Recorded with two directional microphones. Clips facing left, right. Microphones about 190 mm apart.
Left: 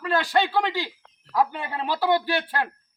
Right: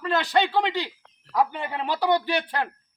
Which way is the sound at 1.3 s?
Centre (ahead or behind).